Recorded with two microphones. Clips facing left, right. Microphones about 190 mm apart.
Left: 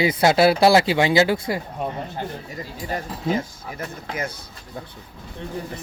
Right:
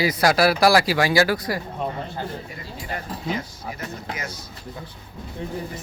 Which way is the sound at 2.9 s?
45° left (ahead or behind).